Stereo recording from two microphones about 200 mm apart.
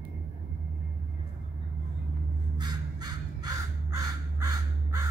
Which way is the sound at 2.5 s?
20° right (ahead or behind).